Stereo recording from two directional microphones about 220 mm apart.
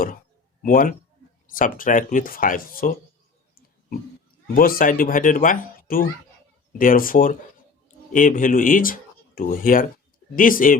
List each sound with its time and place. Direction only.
0.6 s speech: 40° left (ahead or behind)
4.5 s speech: 40° left (ahead or behind)